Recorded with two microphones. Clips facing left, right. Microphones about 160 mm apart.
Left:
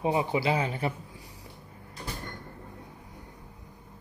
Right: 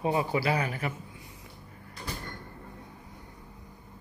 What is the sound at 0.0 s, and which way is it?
Speech, 20° left (ahead or behind).